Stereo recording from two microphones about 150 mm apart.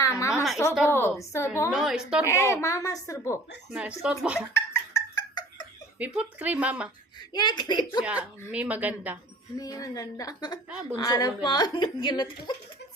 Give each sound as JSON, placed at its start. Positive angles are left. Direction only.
{"t": 0.0, "sound": "a sound", "side_deg": 20}
{"t": 0.9, "sound": "a woman's voice", "side_deg": 15}
{"t": 1.7, "sound": "a woman's voice", "side_deg": -5}
{"t": 2.2, "sound": "a woman's voice", "side_deg": 20}
{"t": 3.7, "sound": "speech", "side_deg": -5}
{"t": 4.4, "sound": "a sound", "side_deg": 15}
{"t": 6.0, "sound": "speech", "side_deg": -10}
{"t": 7.2, "sound": "a woman's voice", "side_deg": 30}
{"t": 8.0, "sound": "speech", "side_deg": -10}
{"t": 9.6, "sound": "a woman's voice", "side_deg": 25}